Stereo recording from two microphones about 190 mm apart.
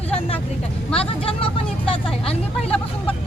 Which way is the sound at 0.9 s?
30° left (ahead or behind).